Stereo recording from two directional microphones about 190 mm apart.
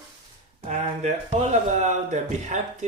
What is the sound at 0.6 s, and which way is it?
Speech, 35° right (ahead or behind).